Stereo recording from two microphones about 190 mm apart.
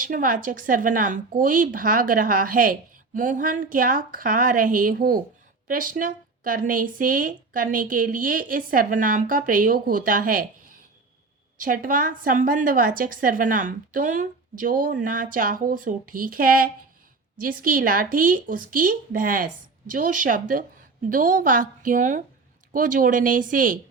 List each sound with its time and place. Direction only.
0.0 s speech: 45° right (ahead or behind)